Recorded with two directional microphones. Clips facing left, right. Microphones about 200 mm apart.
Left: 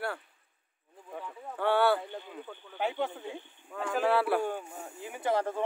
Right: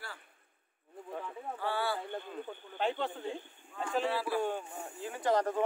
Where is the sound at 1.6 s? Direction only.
65° left (ahead or behind).